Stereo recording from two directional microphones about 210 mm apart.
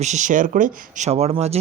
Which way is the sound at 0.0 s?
35° right (ahead or behind).